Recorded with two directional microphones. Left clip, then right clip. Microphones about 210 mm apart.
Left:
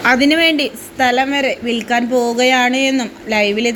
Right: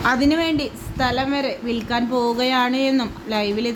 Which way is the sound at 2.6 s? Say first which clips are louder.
Left 5 dB; 40° right (ahead or behind).